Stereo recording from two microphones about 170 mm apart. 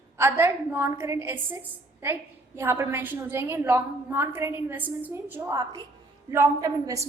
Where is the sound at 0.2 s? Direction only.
15° right (ahead or behind).